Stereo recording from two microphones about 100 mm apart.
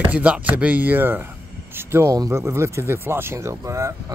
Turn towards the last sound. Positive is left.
turn(degrees=-30)  # may be behind; listen again after turning